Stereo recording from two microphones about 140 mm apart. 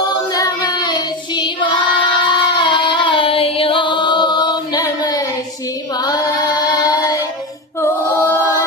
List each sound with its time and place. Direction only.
0.3 s child singing: 25° left (ahead or behind)
6.0 s carnatic music: 30° left (ahead or behind)
7.8 s chant: 20° left (ahead or behind)